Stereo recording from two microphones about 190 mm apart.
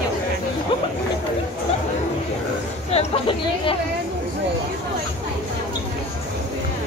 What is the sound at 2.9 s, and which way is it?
Speech, 30° left (ahead or behind).